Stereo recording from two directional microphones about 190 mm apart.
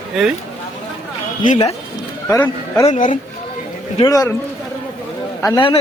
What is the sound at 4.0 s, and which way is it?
Speech, 20° left (ahead or behind).